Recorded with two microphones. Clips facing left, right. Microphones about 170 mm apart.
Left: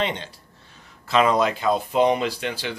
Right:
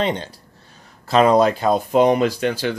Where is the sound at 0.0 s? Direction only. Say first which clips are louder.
Right 4 dB; 40° right (ahead or behind).